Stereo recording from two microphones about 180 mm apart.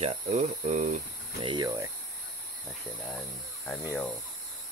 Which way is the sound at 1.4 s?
20° right (ahead or behind).